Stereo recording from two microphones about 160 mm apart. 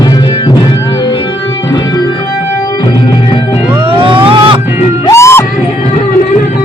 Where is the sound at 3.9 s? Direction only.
35° right (ahead or behind).